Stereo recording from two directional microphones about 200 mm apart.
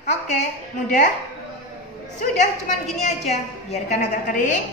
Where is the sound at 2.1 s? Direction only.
35° left (ahead or behind).